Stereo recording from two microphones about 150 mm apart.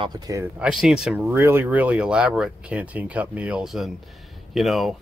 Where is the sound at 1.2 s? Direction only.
15° right (ahead or behind); by 4.9 s centre (ahead or behind).